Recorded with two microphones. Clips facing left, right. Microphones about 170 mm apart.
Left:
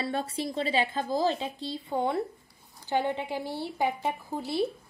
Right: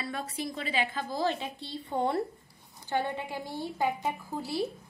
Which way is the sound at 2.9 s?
15° left (ahead or behind).